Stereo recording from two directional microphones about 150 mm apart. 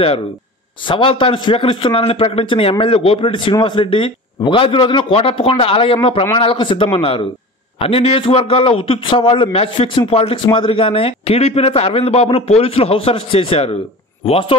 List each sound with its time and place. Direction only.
0.8 s a man's voice: 35° left (ahead or behind)